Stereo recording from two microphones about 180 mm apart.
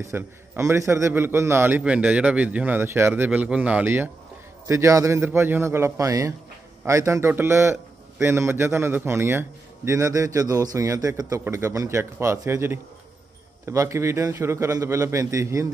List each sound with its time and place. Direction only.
0.0 s a man's voice: 15° right (ahead or behind)